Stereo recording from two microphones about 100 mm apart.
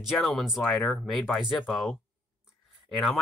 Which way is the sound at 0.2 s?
Centre (ahead or behind).